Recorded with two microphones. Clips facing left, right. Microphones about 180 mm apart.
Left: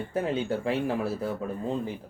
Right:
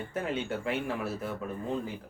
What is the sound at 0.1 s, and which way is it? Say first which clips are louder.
Speech: left 5 dB; 30° left (ahead or behind).